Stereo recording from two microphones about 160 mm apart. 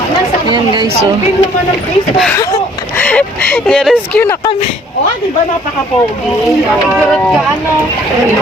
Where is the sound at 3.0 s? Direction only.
10° left (ahead or behind).